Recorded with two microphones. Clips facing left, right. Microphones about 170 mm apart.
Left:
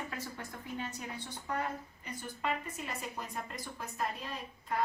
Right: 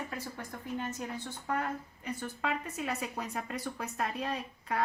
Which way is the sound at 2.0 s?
65° right (ahead or behind).